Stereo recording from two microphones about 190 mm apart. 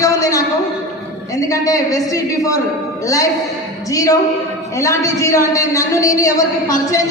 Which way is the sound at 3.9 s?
20° left (ahead or behind).